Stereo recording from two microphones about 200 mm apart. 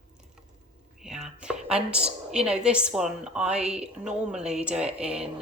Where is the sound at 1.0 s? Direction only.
5° right (ahead or behind).